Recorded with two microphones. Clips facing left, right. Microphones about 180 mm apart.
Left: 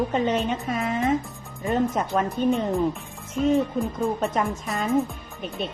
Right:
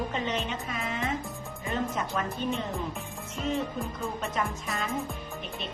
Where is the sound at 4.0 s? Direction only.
35° left (ahead or behind).